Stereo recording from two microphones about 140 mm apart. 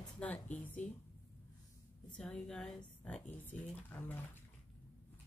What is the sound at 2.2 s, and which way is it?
Speech, 5° left (ahead or behind).